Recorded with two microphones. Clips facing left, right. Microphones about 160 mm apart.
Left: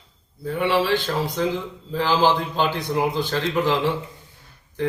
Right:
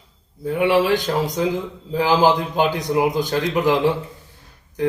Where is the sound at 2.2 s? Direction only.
15° right (ahead or behind).